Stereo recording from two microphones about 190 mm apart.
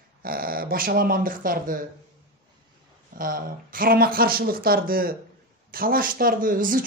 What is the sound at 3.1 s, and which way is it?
Speech, 50° right (ahead or behind).